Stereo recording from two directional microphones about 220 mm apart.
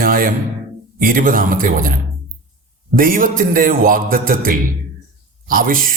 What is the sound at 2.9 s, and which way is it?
A man's voice, 40° right (ahead or behind).